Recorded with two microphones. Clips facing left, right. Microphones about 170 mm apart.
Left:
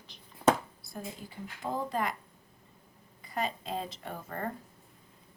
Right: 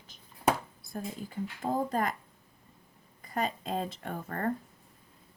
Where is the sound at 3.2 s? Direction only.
45° right (ahead or behind).